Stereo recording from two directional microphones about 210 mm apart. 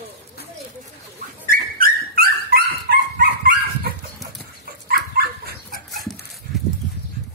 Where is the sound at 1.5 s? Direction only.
45° right (ahead or behind).